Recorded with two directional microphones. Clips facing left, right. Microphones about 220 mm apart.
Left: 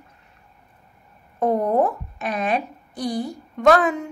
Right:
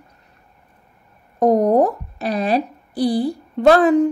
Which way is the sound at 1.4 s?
40° right (ahead or behind).